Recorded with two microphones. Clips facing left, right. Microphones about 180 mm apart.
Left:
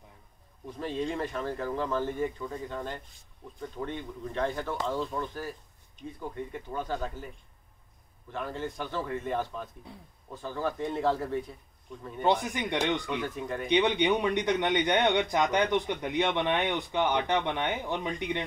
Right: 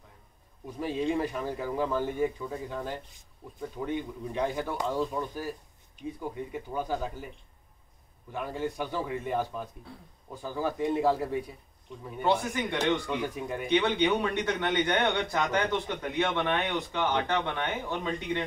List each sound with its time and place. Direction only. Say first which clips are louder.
0.7 s speech: right 3 dB; 10° right (ahead or behind)
8.3 s speech: right 2 dB; 10° right (ahead or behind)
12.2 s a man's voice: even; 15° left (ahead or behind)
13.2 s speech: right 1 dB; 10° right (ahead or behind)
13.7 s a man's voice: even; 15° left (ahead or behind)